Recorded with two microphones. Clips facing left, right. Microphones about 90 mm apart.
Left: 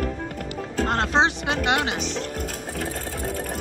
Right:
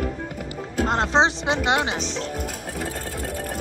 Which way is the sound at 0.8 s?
20° right (ahead or behind).